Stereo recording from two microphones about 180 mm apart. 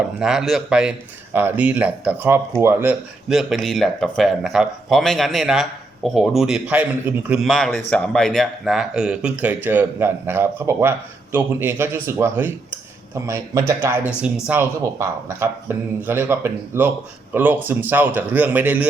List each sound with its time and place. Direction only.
0.0 s speech: 5° right (ahead or behind)
3.2 s speech: centre (ahead or behind)